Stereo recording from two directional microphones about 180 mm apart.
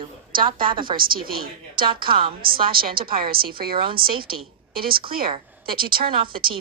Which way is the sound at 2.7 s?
55° right (ahead or behind).